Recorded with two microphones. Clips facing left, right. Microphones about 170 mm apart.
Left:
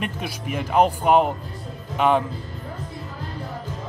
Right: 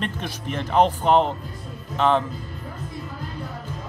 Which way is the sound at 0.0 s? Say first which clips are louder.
Even; 10° left (ahead or behind).